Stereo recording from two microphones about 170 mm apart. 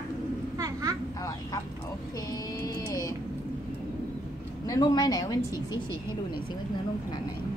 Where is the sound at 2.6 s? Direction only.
20° left (ahead or behind).